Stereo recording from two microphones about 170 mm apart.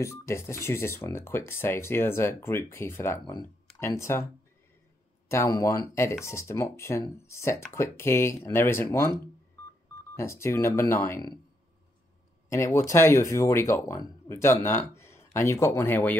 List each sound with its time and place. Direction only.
0.0 s speech: 15° left (ahead or behind)
5.3 s speech: 15° left (ahead or behind)
10.1 s speech: 15° left (ahead or behind)
12.4 s speech: 15° left (ahead or behind)